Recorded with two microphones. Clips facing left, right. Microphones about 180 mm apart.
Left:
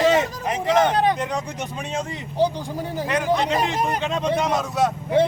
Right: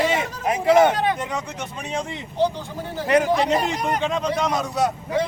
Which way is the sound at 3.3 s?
Centre (ahead or behind).